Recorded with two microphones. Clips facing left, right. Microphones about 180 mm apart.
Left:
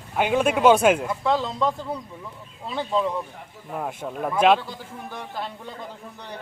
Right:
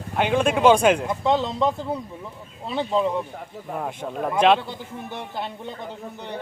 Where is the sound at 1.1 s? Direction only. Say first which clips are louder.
Right 2 dB; 20° right (ahead or behind).